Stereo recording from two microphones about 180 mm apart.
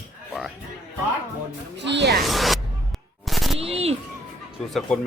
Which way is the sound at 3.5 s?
35° right (ahead or behind).